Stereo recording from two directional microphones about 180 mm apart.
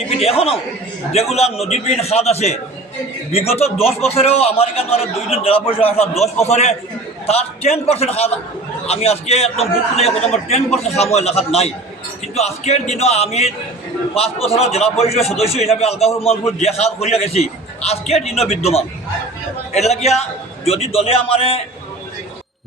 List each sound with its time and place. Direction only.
0.2 s a man's voice: 35° left (ahead or behind)